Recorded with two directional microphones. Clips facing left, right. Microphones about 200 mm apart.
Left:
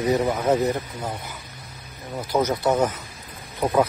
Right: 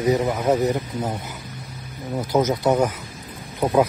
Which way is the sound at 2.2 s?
20° right (ahead or behind).